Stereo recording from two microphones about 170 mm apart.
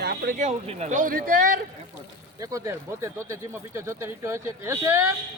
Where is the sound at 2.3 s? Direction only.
20° right (ahead or behind).